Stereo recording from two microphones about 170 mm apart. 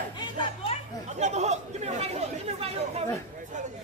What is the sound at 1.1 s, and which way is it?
Speech, 40° right (ahead or behind).